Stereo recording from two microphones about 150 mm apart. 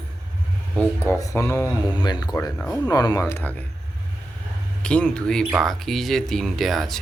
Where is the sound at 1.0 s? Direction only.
20° left (ahead or behind).